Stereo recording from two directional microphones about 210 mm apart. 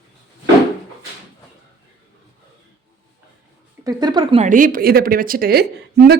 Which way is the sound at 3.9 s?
20° right (ahead or behind).